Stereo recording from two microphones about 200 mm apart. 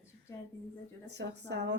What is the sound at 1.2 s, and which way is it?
Speech, 60° right (ahead or behind).